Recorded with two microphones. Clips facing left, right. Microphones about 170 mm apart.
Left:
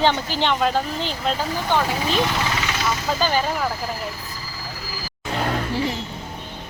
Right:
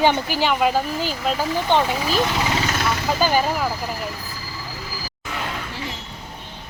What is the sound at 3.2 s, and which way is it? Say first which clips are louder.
Speech: right 3 dB; 10° right (ahead or behind).